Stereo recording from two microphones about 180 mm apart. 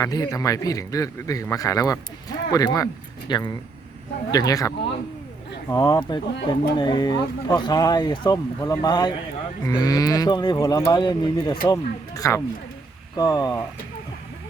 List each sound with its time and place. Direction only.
0.0 s speech: 20° left (ahead or behind)